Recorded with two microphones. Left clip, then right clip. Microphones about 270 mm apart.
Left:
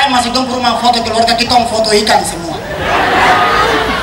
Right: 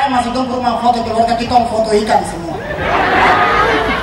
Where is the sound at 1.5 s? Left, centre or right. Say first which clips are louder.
Right 1 dB; right.